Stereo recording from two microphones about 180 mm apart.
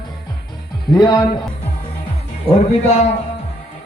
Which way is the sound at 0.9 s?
20° left (ahead or behind).